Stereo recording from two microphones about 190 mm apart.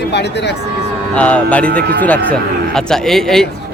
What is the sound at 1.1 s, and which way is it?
Speech, 5° left (ahead or behind).